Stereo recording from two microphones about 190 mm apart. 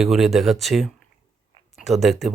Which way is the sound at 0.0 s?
Centre (ahead or behind).